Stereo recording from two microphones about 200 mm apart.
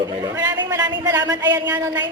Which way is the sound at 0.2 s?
15° right (ahead or behind).